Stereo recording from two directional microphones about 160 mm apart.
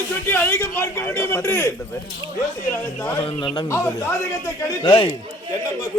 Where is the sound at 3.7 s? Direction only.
15° left (ahead or behind).